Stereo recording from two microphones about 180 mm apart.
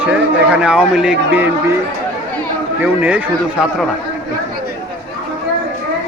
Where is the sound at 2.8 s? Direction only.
10° right (ahead or behind).